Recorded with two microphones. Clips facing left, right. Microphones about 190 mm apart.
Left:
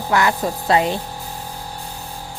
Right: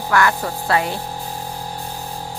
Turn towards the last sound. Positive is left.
turn(degrees=20)  # may be behind; listen again after turning